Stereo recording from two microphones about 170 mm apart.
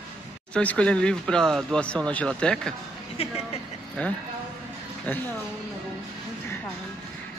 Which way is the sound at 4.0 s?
10° left (ahead or behind).